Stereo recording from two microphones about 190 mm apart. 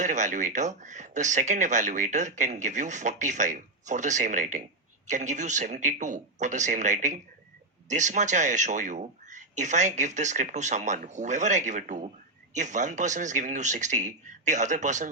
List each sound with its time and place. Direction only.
0.0 s speech: 40° right (ahead or behind)